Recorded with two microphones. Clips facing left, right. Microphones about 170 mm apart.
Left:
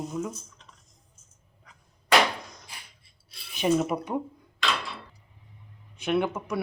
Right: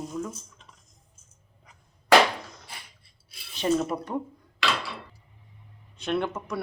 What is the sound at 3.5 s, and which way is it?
Speech, 10° left (ahead or behind).